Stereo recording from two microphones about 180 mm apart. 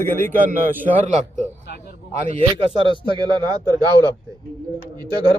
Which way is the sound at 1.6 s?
65° left (ahead or behind).